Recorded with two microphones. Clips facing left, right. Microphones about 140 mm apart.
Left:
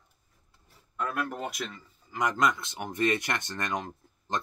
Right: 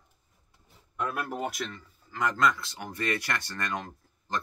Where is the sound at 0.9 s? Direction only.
10° right (ahead or behind).